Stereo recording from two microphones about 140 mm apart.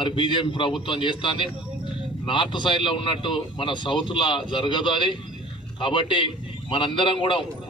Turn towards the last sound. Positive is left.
turn(degrees=35)  # may be behind; listen again after turning